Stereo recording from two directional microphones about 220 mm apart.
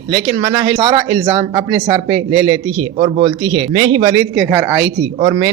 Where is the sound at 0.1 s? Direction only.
20° right (ahead or behind).